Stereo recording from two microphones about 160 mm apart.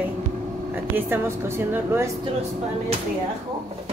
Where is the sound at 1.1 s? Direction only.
15° right (ahead or behind).